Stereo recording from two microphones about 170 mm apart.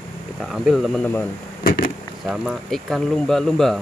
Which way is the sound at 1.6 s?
60° left (ahead or behind).